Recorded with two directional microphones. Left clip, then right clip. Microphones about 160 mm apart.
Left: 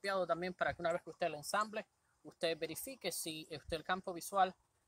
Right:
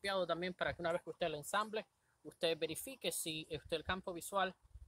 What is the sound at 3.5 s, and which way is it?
Speech, 15° right (ahead or behind).